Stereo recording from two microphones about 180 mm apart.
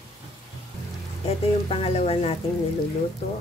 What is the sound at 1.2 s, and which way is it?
A woman's voice, 35° left (ahead or behind).